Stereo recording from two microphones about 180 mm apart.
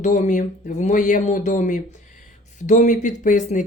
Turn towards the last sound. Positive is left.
turn(degrees=45)  # may be behind; listen again after turning